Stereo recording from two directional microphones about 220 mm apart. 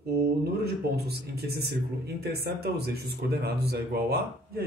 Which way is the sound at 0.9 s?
45° right (ahead or behind).